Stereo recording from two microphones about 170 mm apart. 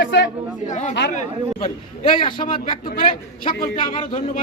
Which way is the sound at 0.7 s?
45° left (ahead or behind).